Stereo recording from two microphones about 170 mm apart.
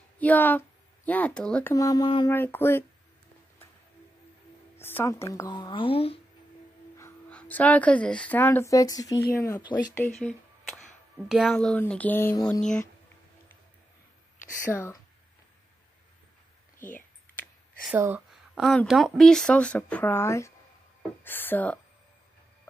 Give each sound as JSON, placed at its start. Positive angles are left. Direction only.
{"t": 0.2, "sound": "speech", "side_deg": 10}
{"t": 4.7, "sound": "speech", "side_deg": 15}
{"t": 7.0, "sound": "speech", "side_deg": 10}
{"t": 14.4, "sound": "speech", "side_deg": 15}
{"t": 17.9, "sound": "speech", "side_deg": -15}
{"t": 18.5, "sound": "speech", "side_deg": 5}